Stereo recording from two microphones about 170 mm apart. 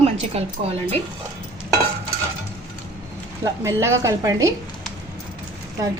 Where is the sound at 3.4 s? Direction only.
15° right (ahead or behind).